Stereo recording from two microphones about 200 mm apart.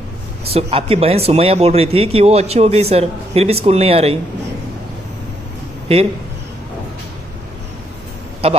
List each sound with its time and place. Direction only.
0.5 s speech: 30° right (ahead or behind)
8.4 s a man's voice: 30° right (ahead or behind)